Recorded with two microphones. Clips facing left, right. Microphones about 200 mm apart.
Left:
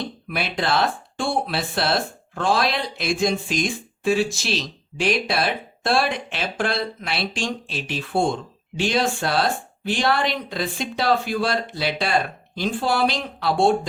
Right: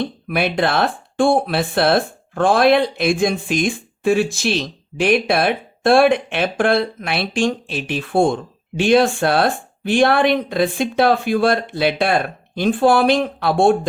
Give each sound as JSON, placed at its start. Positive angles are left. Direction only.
{"t": 0.0, "sound": "speech", "side_deg": -55}